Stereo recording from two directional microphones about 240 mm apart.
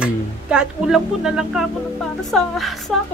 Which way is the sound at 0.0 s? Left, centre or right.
Centre.